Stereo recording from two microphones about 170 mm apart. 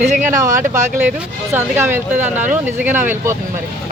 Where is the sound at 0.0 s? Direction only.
45° right (ahead or behind).